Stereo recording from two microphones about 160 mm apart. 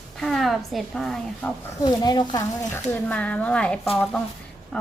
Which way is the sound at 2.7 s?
10° left (ahead or behind).